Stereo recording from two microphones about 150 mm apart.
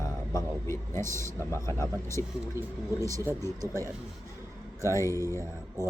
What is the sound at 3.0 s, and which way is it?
Speech, 20° right (ahead or behind).